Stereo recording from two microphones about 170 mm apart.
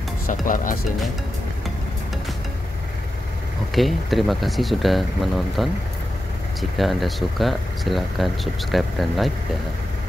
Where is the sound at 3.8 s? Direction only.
Centre (ahead or behind).